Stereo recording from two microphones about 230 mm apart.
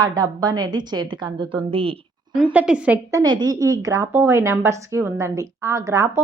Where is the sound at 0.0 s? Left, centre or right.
Centre.